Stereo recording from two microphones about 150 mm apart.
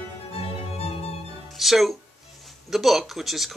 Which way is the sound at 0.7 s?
45° left (ahead or behind).